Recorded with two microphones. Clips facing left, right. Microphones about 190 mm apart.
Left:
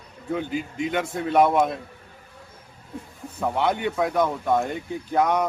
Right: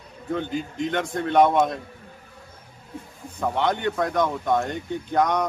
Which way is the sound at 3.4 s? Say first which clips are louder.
Even; 5° left (ahead or behind).